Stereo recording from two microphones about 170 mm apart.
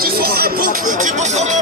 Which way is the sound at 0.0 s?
60° right (ahead or behind).